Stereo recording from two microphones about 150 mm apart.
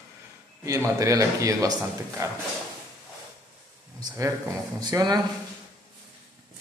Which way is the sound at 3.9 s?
20° right (ahead or behind).